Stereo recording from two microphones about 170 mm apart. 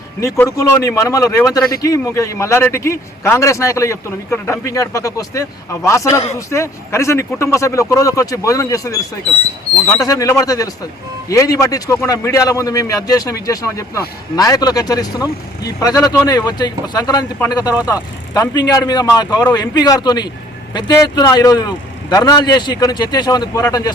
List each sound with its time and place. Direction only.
0.2 s a man's voice: 20° left (ahead or behind)